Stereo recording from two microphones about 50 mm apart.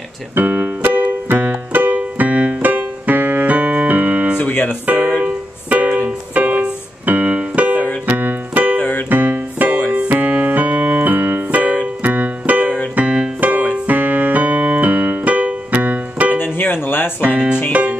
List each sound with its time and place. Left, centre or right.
0.4 s keyboard: right
0.8 s keyboard: right
2.0 s keyboard: right
4.4 s music: left
4.9 s music: right
6.6 s keyboard: right
8.7 s keyboard: left
9.1 s music: right
9.8 s keyboard: right
16.3 s music: left
17.2 s music: right